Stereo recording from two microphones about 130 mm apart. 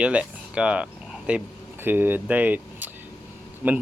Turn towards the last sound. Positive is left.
turn(degrees=-15)  # may be behind; listen again after turning